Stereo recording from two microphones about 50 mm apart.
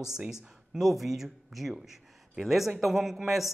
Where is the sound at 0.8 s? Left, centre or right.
Centre.